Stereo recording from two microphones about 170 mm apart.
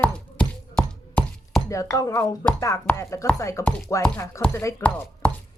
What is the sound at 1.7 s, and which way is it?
Speech, 20° left (ahead or behind).